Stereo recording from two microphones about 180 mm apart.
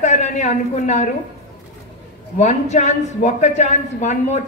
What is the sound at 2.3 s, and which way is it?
A woman's voice, 40° left (ahead or behind).